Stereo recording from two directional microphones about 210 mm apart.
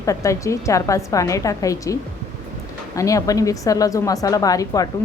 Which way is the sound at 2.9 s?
15° left (ahead or behind).